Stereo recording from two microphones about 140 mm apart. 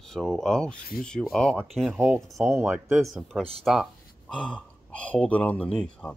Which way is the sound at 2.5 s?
15° right (ahead or behind).